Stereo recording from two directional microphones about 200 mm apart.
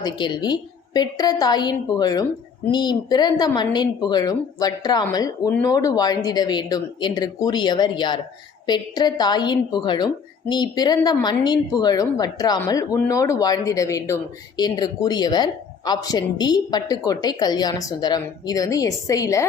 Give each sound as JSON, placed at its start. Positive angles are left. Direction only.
{"t": 0.0, "sound": "a woman's voice", "side_deg": 20}